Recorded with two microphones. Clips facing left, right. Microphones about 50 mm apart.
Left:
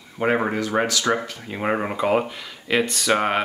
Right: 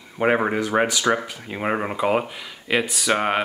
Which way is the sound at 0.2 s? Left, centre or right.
Centre.